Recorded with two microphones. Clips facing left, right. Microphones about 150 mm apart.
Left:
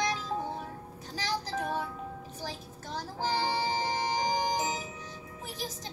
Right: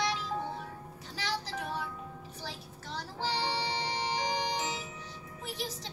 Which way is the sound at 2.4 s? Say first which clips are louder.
Left 3 dB; 45° left (ahead or behind).